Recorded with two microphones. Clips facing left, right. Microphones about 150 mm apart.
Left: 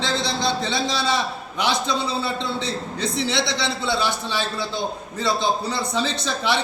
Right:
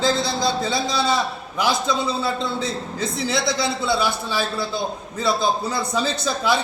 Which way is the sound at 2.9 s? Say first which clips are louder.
Left 1 dB; 5° right (ahead or behind).